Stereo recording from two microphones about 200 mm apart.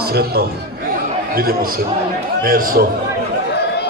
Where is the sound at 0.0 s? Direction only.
50° right (ahead or behind).